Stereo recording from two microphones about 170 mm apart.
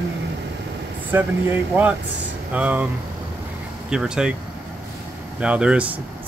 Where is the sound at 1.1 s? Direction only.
10° right (ahead or behind).